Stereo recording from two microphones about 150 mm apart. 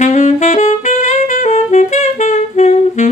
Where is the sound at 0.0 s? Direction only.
50° left (ahead or behind).